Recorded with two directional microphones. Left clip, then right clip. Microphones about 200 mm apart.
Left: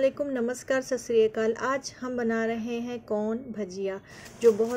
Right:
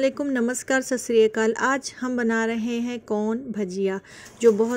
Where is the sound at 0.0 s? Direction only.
40° right (ahead or behind).